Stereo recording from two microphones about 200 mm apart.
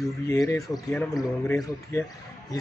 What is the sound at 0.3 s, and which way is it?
Speech, 15° left (ahead or behind).